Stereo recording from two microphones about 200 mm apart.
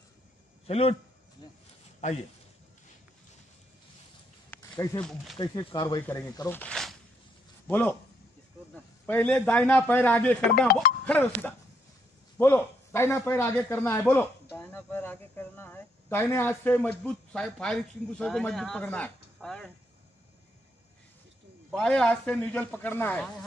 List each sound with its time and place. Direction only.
0.7 s speech: 30° left (ahead or behind)
4.5 s a sound: 15° left (ahead or behind)
5.0 s a man's voice: centre (ahead or behind)
5.4 s speech: 20° left (ahead or behind)
9.0 s a man's voice: 10° left (ahead or behind)
21.6 s a man's voice: 5° left (ahead or behind)